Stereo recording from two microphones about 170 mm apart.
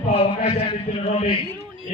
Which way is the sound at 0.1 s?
35° left (ahead or behind).